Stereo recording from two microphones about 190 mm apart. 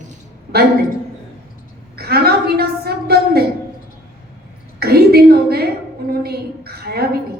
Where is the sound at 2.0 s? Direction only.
55° right (ahead or behind).